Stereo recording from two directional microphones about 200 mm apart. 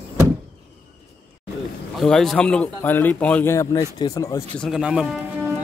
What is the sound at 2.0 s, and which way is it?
A man's voice, centre (ahead or behind).